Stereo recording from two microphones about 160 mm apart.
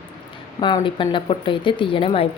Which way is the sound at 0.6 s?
30° left (ahead or behind).